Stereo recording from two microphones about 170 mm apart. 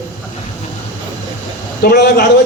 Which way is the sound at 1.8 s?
80° left.